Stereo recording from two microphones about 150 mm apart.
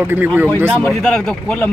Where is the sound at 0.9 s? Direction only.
5° left (ahead or behind).